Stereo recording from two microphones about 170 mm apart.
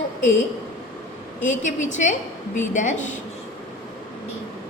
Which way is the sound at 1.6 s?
45° left (ahead or behind).